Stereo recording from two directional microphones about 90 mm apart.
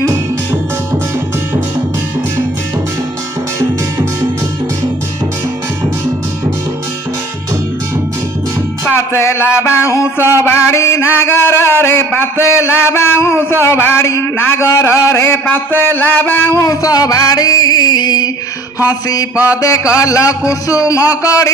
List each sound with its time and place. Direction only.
8.8 s a sound: 30° left (ahead or behind)
16.5 s music: 40° left (ahead or behind)
19.4 s a man's voice: 35° left (ahead or behind)